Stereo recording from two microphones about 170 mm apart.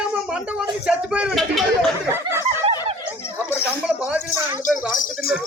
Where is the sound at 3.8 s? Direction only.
10° right (ahead or behind).